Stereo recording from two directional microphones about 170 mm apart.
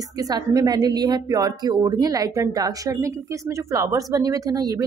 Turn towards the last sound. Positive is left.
turn(degrees=-20)  # may be behind; listen again after turning